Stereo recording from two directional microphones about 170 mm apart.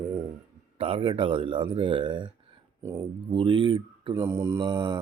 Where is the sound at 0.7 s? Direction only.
35° right (ahead or behind).